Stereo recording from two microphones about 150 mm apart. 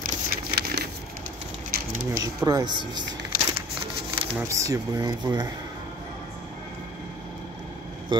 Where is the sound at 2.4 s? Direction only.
30° right (ahead or behind).